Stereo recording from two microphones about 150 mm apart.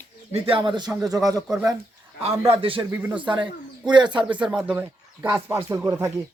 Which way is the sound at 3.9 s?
30° right (ahead or behind).